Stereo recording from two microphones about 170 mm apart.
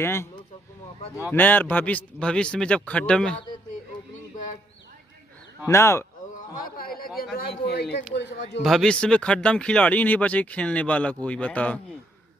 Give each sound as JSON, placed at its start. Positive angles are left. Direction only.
{"t": 0.0, "sound": "speech", "side_deg": 15}
{"t": 1.3, "sound": "speech", "side_deg": 10}
{"t": 5.7, "sound": "speech", "side_deg": 15}
{"t": 6.3, "sound": "a sound", "side_deg": 55}
{"t": 7.7, "sound": "speech", "side_deg": 75}
{"t": 8.1, "sound": "a man's voice", "side_deg": 90}
{"t": 8.6, "sound": "speech", "side_deg": 5}